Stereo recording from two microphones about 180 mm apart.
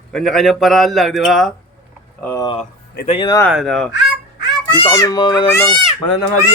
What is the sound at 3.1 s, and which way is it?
Speech, 25° left (ahead or behind).